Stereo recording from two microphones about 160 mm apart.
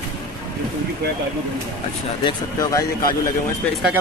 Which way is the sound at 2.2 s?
25° left (ahead or behind).